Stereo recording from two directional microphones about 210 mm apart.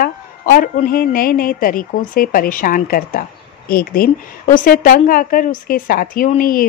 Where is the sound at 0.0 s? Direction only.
40° left (ahead or behind).